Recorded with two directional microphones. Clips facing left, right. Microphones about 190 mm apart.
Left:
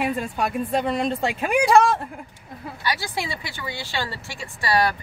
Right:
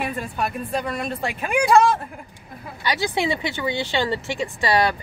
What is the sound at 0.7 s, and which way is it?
Speech, 25° left (ahead or behind).